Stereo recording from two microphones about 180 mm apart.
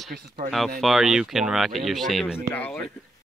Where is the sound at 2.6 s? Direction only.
10° left (ahead or behind).